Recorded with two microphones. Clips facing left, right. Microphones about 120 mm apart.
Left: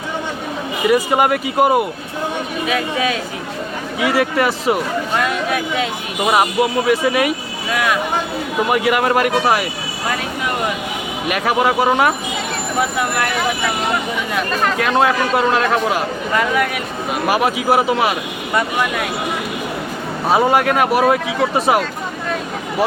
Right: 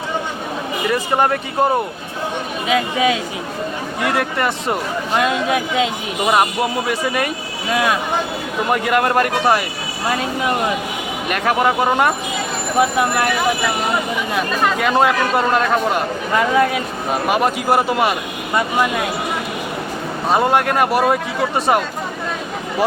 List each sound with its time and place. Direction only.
0.9 s speech: 10° left (ahead or behind)
2.6 s speech: 20° right (ahead or behind)
4.0 s speech: 5° left (ahead or behind)
5.1 s speech: 20° right (ahead or behind)
6.2 s speech: 5° left (ahead or behind)
7.7 s speech: 25° right (ahead or behind)
8.7 s speech: 5° left (ahead or behind)
11.3 s speech: 5° left (ahead or behind)
14.8 s speech: centre (ahead or behind)
16.4 s speech: 25° right (ahead or behind)
17.2 s speech: 5° left (ahead or behind)
20.2 s speech: centre (ahead or behind)